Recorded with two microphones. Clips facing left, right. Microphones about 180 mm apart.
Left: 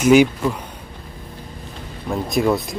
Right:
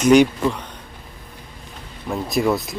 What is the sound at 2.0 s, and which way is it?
Speech, centre (ahead or behind).